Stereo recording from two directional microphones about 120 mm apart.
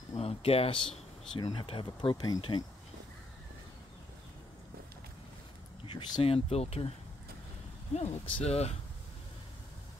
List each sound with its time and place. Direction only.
0.2 s speech: 55° left (ahead or behind)
1.3 s speech: 40° left (ahead or behind)
5.9 s speech: 40° left (ahead or behind); by 6.9 s 60° left (ahead or behind)
7.9 s speech: 65° left (ahead or behind)